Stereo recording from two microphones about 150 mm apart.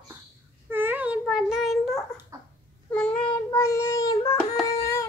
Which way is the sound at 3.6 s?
20° left (ahead or behind).